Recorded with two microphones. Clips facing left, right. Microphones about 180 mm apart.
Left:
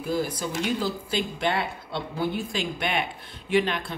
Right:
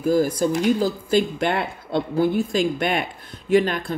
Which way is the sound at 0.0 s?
45° right (ahead or behind).